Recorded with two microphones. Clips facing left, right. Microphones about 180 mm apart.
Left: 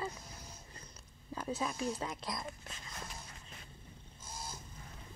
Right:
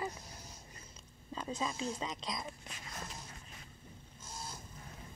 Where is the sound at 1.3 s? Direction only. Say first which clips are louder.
Left 1 dB; 5° left (ahead or behind).